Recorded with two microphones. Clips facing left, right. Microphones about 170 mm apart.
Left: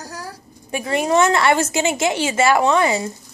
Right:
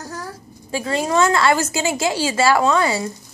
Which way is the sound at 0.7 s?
20° left (ahead or behind).